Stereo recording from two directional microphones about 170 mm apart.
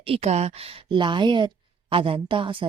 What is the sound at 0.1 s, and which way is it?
A woman's voice, 40° right (ahead or behind).